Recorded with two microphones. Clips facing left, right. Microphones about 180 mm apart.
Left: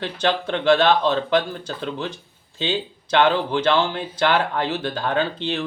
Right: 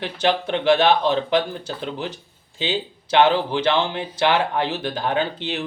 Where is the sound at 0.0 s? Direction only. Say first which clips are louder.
Right 1 dB; 15° right (ahead or behind).